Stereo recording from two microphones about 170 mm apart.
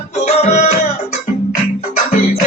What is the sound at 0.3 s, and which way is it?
Music, 40° left (ahead or behind).